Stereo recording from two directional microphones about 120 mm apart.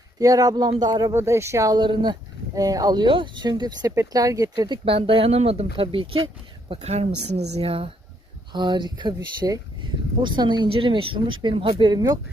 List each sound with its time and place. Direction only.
0.2 s speech: 30° right (ahead or behind)
1.1 s speech: 20° right (ahead or behind)
4.9 s speech: 50° right (ahead or behind)
6.9 s speech: 65° right (ahead or behind)
8.5 s speech: 40° right (ahead or behind)